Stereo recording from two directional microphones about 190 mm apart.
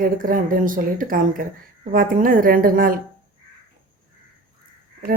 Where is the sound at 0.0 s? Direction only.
45° right (ahead or behind).